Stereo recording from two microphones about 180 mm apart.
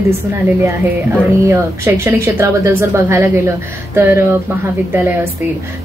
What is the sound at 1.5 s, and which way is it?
A woman's voice, 15° right (ahead or behind).